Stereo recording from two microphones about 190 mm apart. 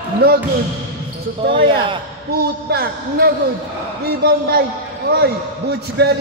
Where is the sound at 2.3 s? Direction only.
55° right (ahead or behind).